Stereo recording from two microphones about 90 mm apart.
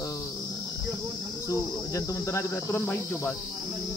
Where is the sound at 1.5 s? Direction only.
35° left (ahead or behind); by 3.3 s 20° left (ahead or behind).